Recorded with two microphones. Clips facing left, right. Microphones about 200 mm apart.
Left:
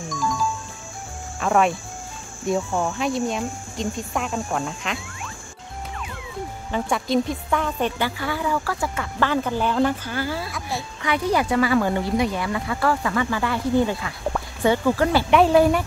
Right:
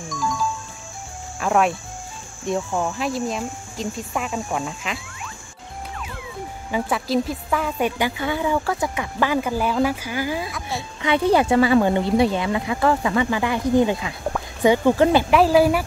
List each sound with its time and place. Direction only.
0.1 s music: centre (ahead or behind)
1.4 s speech: centre (ahead or behind)
8.2 s speech: 20° right (ahead or behind)
11.0 s speech: 25° right (ahead or behind)
15.2 s speech: centre (ahead or behind)